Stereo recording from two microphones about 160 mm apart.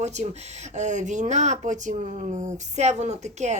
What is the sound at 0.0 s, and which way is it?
Speech, 45° right (ahead or behind).